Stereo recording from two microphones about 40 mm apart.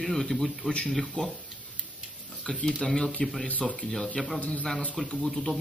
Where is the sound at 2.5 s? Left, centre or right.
Centre.